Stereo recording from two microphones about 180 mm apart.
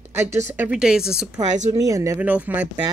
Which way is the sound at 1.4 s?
40° right (ahead or behind).